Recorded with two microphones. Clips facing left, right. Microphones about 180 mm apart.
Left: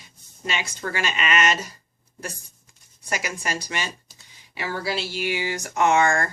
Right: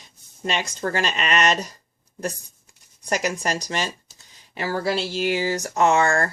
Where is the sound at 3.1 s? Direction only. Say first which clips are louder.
Right 5 dB; 40° right (ahead or behind).